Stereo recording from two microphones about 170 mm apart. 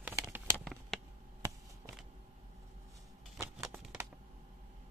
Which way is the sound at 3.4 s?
20° right (ahead or behind).